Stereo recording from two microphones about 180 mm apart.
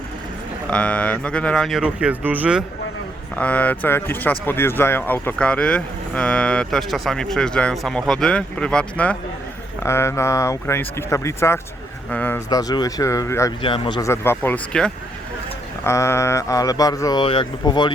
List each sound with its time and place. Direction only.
0.7 s speech: 5° left (ahead or behind)
3.3 s speech: 10° left (ahead or behind)
13.6 s speech: 30° left (ahead or behind)
14.0 s speech: 15° left (ahead or behind)
15.8 s speech: 15° left (ahead or behind)